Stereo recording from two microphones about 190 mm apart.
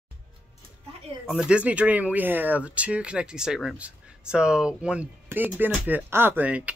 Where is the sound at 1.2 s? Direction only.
5° right (ahead or behind).